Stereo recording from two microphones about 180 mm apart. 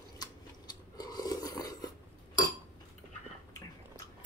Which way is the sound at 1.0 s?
20° left (ahead or behind).